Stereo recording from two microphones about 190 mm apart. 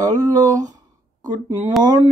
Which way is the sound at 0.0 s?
20° right (ahead or behind).